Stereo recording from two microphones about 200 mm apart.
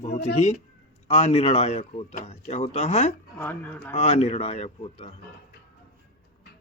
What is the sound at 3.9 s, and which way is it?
Speech, 35° left (ahead or behind).